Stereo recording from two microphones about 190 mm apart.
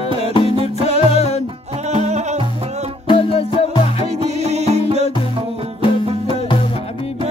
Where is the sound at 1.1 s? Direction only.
35° left (ahead or behind).